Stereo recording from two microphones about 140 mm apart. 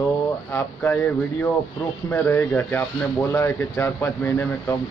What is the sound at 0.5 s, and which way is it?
Speech, 15° left (ahead or behind).